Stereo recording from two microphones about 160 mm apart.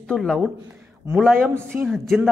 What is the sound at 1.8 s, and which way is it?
Speech, centre (ahead or behind).